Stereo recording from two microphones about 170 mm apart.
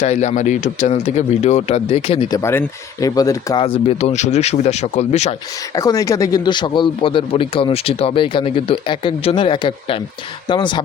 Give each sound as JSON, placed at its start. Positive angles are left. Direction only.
{"t": 0.0, "sound": "speech", "side_deg": 40}
{"t": 2.3, "sound": "speech", "side_deg": 15}
{"t": 5.7, "sound": "speech", "side_deg": 20}